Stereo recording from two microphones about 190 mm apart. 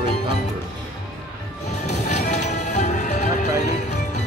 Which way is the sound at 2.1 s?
35° left (ahead or behind).